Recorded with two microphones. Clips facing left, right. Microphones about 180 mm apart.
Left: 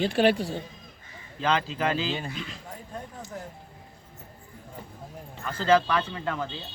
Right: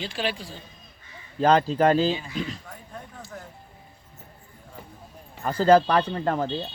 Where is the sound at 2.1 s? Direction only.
50° left (ahead or behind).